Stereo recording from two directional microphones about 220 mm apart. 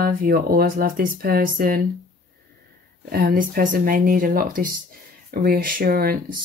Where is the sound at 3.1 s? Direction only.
40° right (ahead or behind).